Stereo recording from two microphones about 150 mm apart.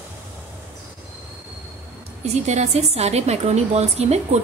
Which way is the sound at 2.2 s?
50° right (ahead or behind).